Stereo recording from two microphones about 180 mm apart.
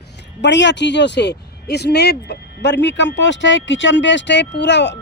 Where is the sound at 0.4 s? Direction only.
80° left.